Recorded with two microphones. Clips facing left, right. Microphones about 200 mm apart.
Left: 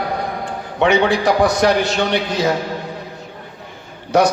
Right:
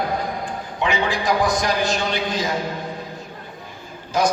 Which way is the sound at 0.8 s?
70° left (ahead or behind).